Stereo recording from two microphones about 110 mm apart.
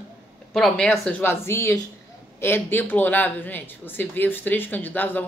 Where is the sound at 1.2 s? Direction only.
20° left (ahead or behind).